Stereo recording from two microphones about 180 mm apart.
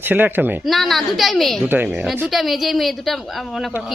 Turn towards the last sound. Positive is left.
turn(degrees=0)  # may be behind; listen again after turning